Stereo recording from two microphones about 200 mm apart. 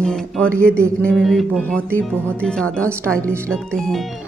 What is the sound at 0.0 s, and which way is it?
Speech, centre (ahead or behind).